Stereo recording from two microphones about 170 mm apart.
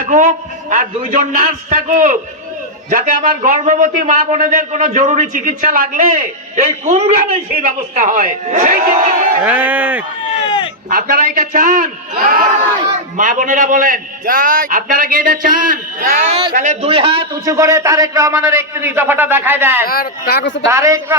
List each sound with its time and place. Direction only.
0.0 s a man's voice: 50° right (ahead or behind)
9.4 s a man's voice: 10° right (ahead or behind)
10.8 s a man's voice: 55° right (ahead or behind); by 17.2 s 35° right (ahead or behind)
17.4 s a man's voice: 20° right (ahead or behind)
19.9 s speech: 60° left (ahead or behind); by 20.7 s 90° left
20.7 s a man's voice: 15° right (ahead or behind)